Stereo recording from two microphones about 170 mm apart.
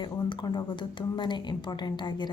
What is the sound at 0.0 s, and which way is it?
Speech, 30° left (ahead or behind).